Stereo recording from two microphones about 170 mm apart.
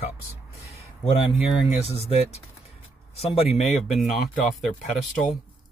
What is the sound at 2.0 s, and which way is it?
Speech, 40° left (ahead or behind).